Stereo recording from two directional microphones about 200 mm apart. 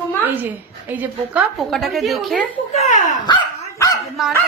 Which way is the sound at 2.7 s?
35° left (ahead or behind).